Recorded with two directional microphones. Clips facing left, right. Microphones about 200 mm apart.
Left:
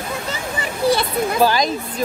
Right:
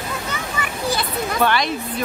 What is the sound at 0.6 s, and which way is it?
Speech, 30° left (ahead or behind).